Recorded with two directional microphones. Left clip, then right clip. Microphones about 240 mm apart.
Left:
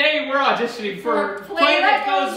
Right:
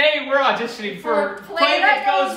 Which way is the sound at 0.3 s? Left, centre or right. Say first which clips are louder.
Right 1 dB; centre.